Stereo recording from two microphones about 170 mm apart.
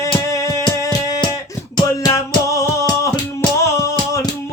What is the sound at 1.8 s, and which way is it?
Music, 25° left (ahead or behind).